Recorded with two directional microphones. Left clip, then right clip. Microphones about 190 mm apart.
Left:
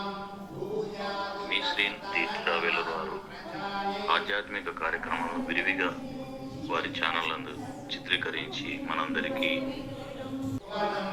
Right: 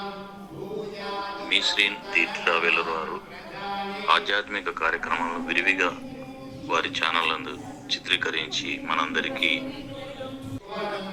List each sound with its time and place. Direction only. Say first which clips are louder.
1.5 s a man's voice: right 7 dB; 15° right (ahead or behind)